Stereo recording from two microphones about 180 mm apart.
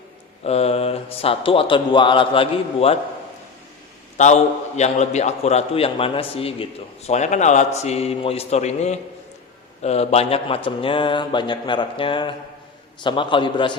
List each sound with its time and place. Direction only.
0.4 s a man's voice: 35° left (ahead or behind)
4.2 s a man's voice: 40° left (ahead or behind); by 13.7 s 25° left (ahead or behind)